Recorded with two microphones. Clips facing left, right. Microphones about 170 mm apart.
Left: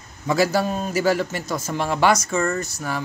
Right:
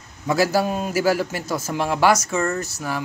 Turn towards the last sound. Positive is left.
turn(degrees=-5)  # may be behind; listen again after turning